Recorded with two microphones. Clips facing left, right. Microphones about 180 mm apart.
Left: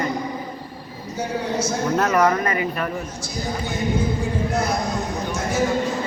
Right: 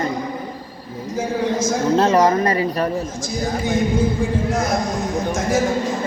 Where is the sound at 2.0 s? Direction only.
30° right (ahead or behind).